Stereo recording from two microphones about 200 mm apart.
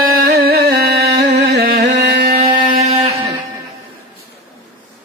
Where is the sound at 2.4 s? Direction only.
25° right (ahead or behind).